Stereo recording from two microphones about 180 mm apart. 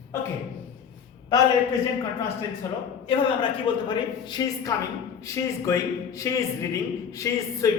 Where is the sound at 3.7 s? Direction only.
30° left (ahead or behind).